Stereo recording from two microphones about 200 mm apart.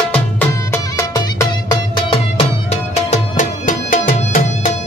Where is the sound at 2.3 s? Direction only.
30° left (ahead or behind).